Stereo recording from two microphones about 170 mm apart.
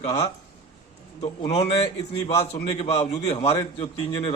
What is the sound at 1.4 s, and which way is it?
A man's voice, 40° left (ahead or behind).